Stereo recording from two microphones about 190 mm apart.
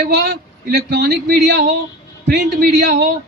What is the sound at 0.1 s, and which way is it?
A man's voice, 60° right (ahead or behind).